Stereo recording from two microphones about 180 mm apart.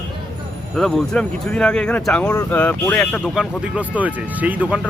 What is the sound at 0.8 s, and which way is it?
Speech, centre (ahead or behind).